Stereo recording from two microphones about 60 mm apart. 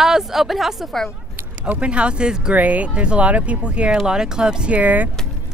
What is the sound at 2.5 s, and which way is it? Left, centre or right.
Speech, right.